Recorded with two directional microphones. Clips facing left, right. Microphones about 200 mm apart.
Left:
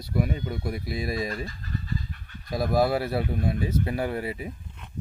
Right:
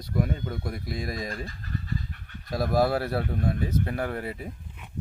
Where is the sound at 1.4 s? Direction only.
55° right (ahead or behind).